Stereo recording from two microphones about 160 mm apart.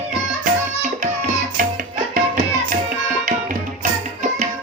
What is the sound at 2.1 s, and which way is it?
Tabla, 60° right (ahead or behind).